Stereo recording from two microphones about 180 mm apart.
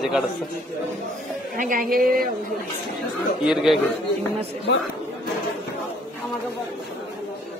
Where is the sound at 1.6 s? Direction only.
45° right (ahead or behind).